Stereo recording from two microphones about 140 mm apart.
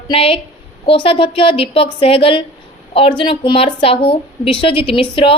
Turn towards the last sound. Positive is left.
turn(degrees=40)  # may be behind; listen again after turning